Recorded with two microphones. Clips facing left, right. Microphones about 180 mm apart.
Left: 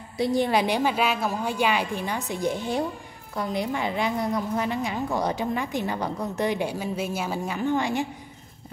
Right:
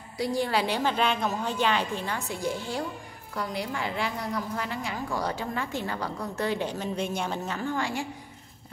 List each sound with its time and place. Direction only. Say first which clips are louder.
0.2 s a woman's voice: left 4 dB; 20° left (ahead or behind)